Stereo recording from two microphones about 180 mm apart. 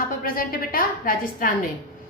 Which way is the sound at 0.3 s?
55° left (ahead or behind).